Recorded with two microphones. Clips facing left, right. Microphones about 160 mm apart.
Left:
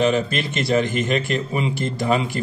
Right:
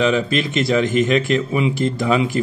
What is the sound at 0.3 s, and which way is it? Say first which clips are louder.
Speech: right 3 dB; centre (ahead or behind).